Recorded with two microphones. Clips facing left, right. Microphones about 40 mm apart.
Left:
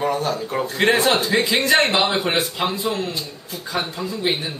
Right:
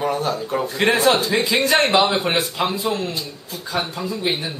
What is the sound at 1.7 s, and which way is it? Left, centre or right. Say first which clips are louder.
Speech: right 2 dB; centre.